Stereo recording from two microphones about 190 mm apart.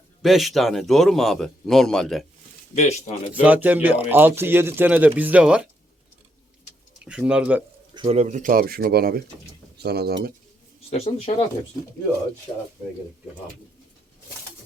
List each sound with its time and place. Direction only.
0.2 s speech: centre (ahead or behind)
2.7 s speech: 35° left (ahead or behind)
3.4 s speech: 10° right (ahead or behind)
7.0 s speech: 5° right (ahead or behind)
7.9 s speech: 35° right (ahead or behind); by 10.3 s 55° right (ahead or behind)
10.9 s speech: 35° left (ahead or behind)